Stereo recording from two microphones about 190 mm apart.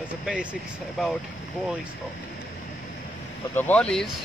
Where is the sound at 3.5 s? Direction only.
10° left (ahead or behind).